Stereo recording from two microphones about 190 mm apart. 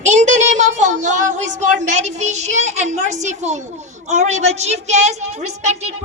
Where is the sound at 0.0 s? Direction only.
40° right (ahead or behind).